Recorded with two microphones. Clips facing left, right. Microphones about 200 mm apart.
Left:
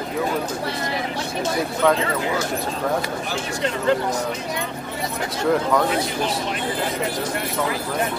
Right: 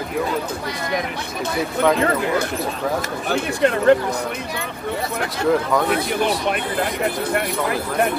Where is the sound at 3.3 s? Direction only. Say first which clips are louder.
Right 9 dB; 60° right (ahead or behind).